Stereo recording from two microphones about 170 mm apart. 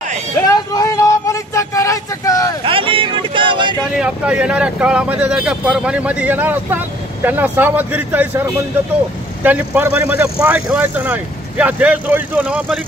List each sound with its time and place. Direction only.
0.5 s vehicle: 20° left (ahead or behind)
2.6 s a sound: 30° right (ahead or behind)
3.9 s a man's voice: 5° right (ahead or behind)